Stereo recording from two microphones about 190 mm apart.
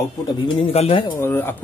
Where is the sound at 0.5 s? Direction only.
30° left (ahead or behind).